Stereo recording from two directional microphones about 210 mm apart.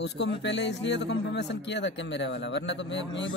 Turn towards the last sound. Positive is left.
turn(degrees=60)  # may be behind; listen again after turning